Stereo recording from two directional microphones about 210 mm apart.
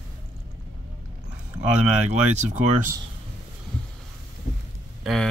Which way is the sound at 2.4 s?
35° right (ahead or behind).